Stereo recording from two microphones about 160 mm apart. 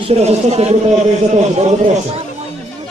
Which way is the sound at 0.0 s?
40° right (ahead or behind).